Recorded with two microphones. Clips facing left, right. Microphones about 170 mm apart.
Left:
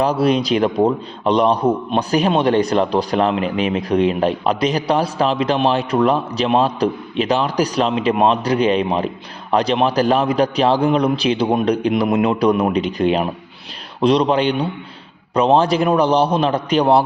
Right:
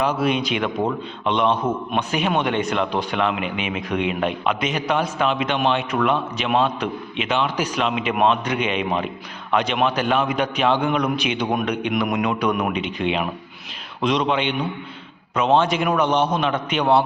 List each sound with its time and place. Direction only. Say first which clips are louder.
0.0 s a man's voice: left 5 dB; 35° left (ahead or behind)